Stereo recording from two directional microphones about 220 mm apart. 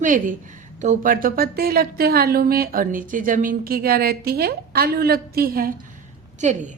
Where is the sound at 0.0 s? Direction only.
35° right (ahead or behind).